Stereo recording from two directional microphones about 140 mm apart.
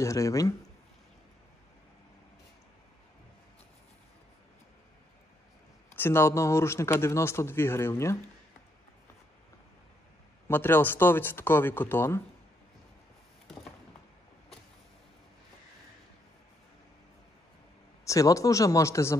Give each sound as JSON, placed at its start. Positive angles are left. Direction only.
{"t": 0.0, "sound": "speech", "side_deg": 25}
{"t": 5.9, "sound": "speech", "side_deg": 15}
{"t": 10.5, "sound": "speech", "side_deg": 15}
{"t": 18.0, "sound": "speech", "side_deg": 25}